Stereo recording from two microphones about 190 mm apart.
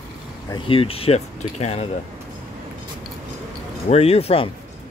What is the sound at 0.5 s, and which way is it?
Speech, 30° left (ahead or behind).